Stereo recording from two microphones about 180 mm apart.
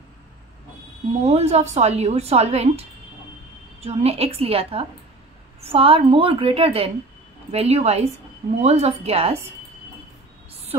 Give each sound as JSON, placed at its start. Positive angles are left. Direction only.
{"t": 1.2, "sound": "speech", "side_deg": -35}
{"t": 10.7, "sound": "speech", "side_deg": -35}